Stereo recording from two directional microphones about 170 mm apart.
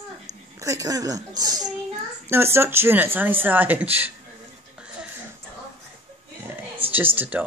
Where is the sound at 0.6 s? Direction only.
20° right (ahead or behind).